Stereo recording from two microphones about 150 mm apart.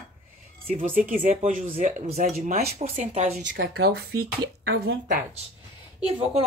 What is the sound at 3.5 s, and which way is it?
Speech, 90° right.